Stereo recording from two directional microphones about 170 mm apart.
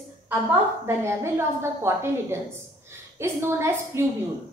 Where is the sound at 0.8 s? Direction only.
15° right (ahead or behind).